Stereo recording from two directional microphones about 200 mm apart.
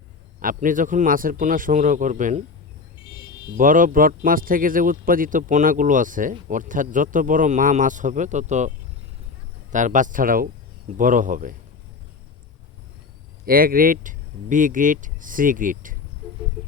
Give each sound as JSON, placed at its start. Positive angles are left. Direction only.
{"t": 0.3, "sound": "speech", "side_deg": -40}
{"t": 3.6, "sound": "speech", "side_deg": -40}
{"t": 9.7, "sound": "speech", "side_deg": -40}
{"t": 13.4, "sound": "speech", "side_deg": -45}